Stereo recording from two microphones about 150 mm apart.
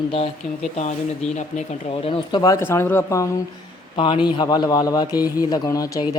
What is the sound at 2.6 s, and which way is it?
A man's voice, 15° left (ahead or behind).